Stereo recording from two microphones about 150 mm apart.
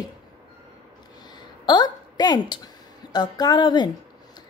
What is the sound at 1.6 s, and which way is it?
A woman's voice, 30° left (ahead or behind).